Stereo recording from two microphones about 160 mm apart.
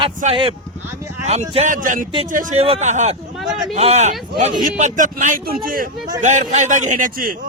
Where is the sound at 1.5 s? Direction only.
50° right (ahead or behind).